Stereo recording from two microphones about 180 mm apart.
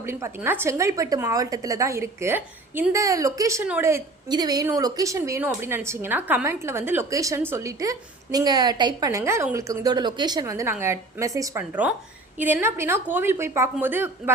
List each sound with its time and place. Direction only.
0.0 s a woman's voice: 15° right (ahead or behind)